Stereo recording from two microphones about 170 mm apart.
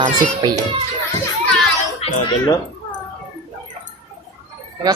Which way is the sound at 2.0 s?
35° left (ahead or behind).